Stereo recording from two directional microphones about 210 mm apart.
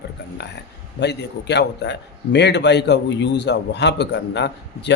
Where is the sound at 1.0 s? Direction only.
55° left (ahead or behind).